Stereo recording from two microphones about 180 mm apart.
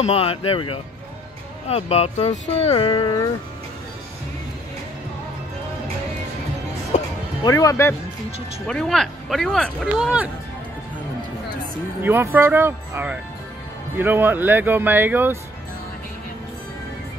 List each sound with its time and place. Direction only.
0.0 s speech: 35° left (ahead or behind)
7.4 s speech: 20° left (ahead or behind)
8.6 s speech: 5° left (ahead or behind)
12.0 s speech: 10° right (ahead or behind)